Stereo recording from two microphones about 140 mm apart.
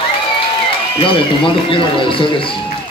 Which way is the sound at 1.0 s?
40° left (ahead or behind).